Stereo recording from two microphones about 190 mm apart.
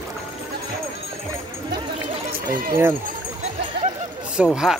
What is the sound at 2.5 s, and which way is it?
Speech, 45° right (ahead or behind).